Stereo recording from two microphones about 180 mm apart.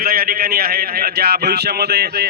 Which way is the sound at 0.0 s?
55° right (ahead or behind).